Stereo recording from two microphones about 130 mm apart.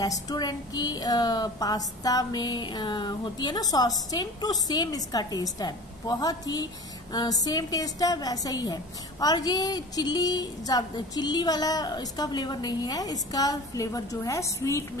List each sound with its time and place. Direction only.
0.0 s a woman's voice: 30° left (ahead or behind)